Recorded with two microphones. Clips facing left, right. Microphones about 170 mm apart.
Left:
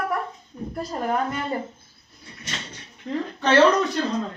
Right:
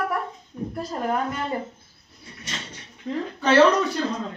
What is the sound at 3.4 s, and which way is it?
Speech, 5° right (ahead or behind).